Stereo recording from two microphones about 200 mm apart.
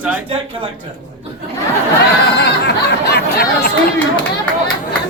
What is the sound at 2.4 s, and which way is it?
Chatter, 60° left (ahead or behind).